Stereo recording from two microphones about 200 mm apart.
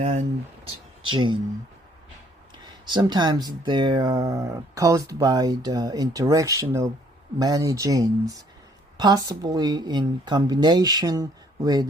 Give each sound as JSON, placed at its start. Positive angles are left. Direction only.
{"t": 1.0, "sound": "speech", "side_deg": -25}
{"t": 2.6, "sound": "speech", "side_deg": -20}